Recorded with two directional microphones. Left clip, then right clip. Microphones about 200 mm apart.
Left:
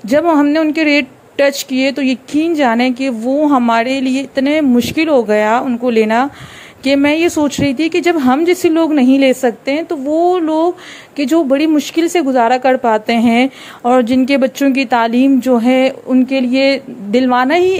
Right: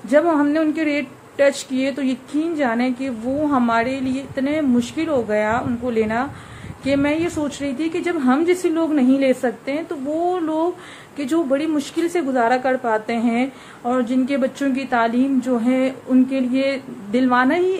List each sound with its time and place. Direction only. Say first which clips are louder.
0.1 s a woman's voice: left 5 dB; 40° left (ahead or behind)